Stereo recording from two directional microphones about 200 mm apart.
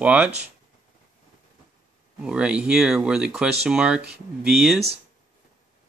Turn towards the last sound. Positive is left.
turn(degrees=-5)  # may be behind; listen again after turning